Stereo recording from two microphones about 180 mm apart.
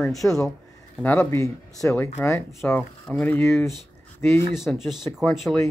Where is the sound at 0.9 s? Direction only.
10° left (ahead or behind).